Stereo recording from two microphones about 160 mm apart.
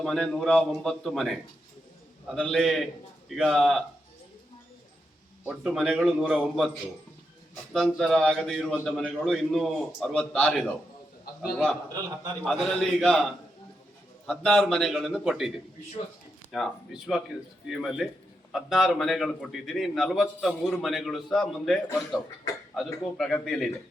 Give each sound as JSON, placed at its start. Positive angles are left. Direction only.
{"t": 0.0, "sound": "a man's voice", "side_deg": 5}
{"t": 5.5, "sound": "a man's voice", "side_deg": 0}
{"t": 7.7, "sound": "a man's voice", "side_deg": 0}
{"t": 14.3, "sound": "a man's voice", "side_deg": 0}